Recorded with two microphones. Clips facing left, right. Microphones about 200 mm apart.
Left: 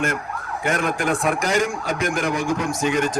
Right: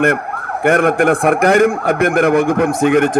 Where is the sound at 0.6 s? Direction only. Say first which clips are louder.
Right 11 dB; 60° right (ahead or behind).